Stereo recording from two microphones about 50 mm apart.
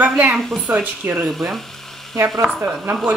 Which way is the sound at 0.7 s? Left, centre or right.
Right.